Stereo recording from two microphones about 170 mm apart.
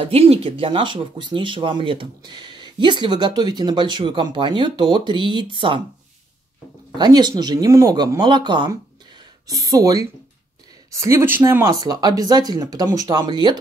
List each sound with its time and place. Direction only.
0.0 s speech: 35° right (ahead or behind)
7.0 s speech: 25° right (ahead or behind)